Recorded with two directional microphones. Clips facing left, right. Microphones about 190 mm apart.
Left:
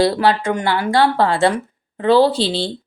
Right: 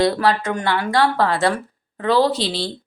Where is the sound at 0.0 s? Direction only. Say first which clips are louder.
Left 2 dB; 30° left (ahead or behind).